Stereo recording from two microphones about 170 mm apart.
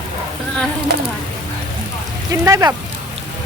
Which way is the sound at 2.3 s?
20° right (ahead or behind).